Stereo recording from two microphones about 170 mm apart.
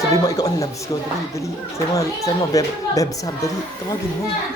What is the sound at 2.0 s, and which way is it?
A man's voice, 20° left (ahead or behind).